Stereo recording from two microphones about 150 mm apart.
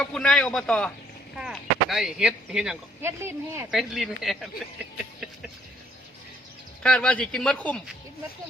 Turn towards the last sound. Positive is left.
turn(degrees=10)  # may be behind; listen again after turning